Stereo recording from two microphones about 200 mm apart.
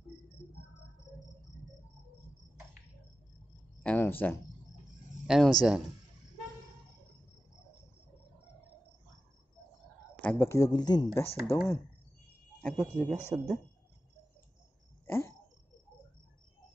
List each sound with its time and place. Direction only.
3.8 s speech: 10° left (ahead or behind)
5.2 s speech: centre (ahead or behind)
10.2 s speech: 10° left (ahead or behind)
13.3 s speech: 15° right (ahead or behind)
15.0 s a sound: 10° left (ahead or behind)